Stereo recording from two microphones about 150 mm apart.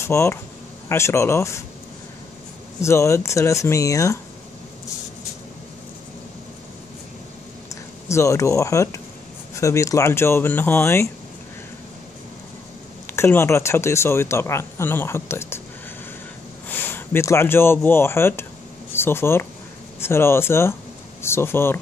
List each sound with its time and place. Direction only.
0.0 s speech: 15° left (ahead or behind)
2.8 s speech: 20° left (ahead or behind)
8.1 s speech: 20° left (ahead or behind)
13.0 s speech: 15° left (ahead or behind)
16.6 s speech: 15° left (ahead or behind)